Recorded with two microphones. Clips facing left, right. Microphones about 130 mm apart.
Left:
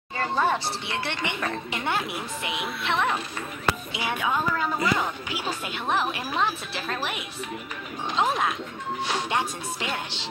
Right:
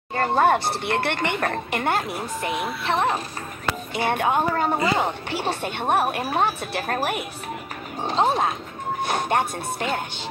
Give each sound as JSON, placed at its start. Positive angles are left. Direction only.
{"t": 0.1, "sound": "speech", "side_deg": -55}
{"t": 3.9, "sound": "a woman's voice", "side_deg": -55}
{"t": 4.5, "sound": "speech", "side_deg": -40}
{"t": 4.7, "sound": "a woman's voice", "side_deg": -55}
{"t": 5.4, "sound": "speech", "side_deg": -35}
{"t": 5.9, "sound": "speech", "side_deg": -55}
{"t": 8.0, "sound": "speech", "side_deg": -35}
{"t": 9.0, "sound": "speech", "side_deg": -50}